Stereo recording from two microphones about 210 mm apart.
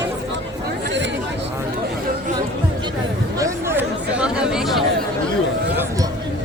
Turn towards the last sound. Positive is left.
turn(degrees=0)  # may be behind; listen again after turning